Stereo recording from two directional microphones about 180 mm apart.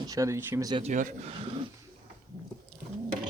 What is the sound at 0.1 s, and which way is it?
Speech, 15° right (ahead or behind).